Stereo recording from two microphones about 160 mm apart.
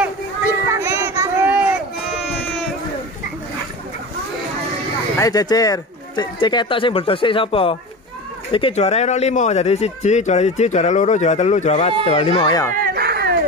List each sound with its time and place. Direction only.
0.7 s child singing: 15° right (ahead or behind)
2.1 s a sound: centre (ahead or behind)
5.2 s a man's voice: 25° left (ahead or behind)
12.7 s dog: 70° right (ahead or behind)